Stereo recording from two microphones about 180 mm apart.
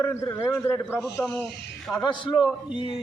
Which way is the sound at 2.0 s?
25° left (ahead or behind).